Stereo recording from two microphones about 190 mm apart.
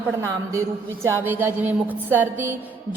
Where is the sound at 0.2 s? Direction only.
15° right (ahead or behind).